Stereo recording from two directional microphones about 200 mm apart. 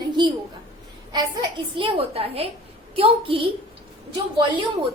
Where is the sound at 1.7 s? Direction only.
25° right (ahead or behind).